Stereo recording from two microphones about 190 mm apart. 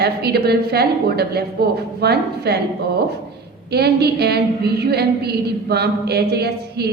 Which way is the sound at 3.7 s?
60° right (ahead or behind).